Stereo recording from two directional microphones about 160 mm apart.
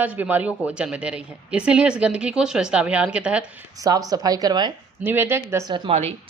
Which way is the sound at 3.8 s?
25° right (ahead or behind).